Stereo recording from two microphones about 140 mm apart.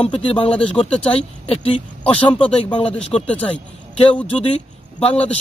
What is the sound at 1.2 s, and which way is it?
A man's voice, 45° left (ahead or behind).